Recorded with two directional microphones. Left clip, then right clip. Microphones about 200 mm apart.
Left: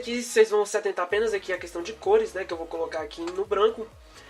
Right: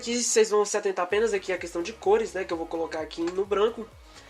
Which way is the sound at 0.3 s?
40° right (ahead or behind).